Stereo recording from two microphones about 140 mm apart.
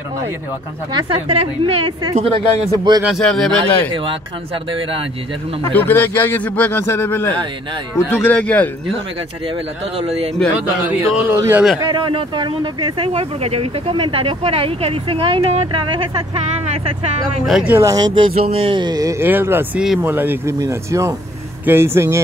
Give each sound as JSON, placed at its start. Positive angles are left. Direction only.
{"t": 0.9, "sound": "a woman's voice", "side_deg": -40}
{"t": 3.0, "sound": "a man's voice", "side_deg": 0}
{"t": 5.7, "sound": "a man's voice", "side_deg": 15}
{"t": 9.9, "sound": "a woman's voice", "side_deg": -45}
{"t": 10.9, "sound": "speech", "side_deg": -15}
{"t": 11.8, "sound": "speech", "side_deg": -35}
{"t": 17.5, "sound": "a man's voice", "side_deg": -5}
{"t": 17.7, "sound": "speech", "side_deg": -25}